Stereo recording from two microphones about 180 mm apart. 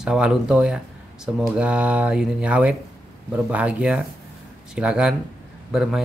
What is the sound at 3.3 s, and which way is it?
Speech, 10° right (ahead or behind).